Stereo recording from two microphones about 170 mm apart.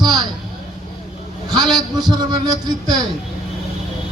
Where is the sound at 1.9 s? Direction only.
25° right (ahead or behind).